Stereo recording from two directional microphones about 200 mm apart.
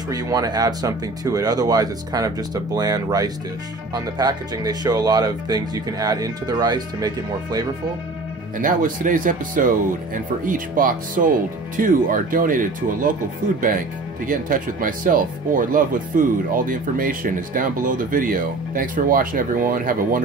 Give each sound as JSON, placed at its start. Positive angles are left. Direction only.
{"t": 0.1, "sound": "speech", "side_deg": -20}
{"t": 8.5, "sound": "speech", "side_deg": -40}